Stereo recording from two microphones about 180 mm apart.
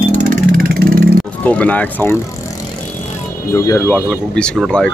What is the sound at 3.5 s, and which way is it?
Speech, 15° left (ahead or behind).